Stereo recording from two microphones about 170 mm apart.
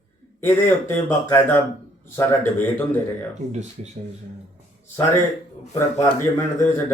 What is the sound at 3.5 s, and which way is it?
Speech, 40° right (ahead or behind).